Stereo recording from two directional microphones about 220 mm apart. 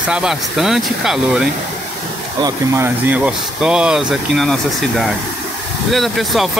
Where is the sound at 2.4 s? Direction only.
10° right (ahead or behind).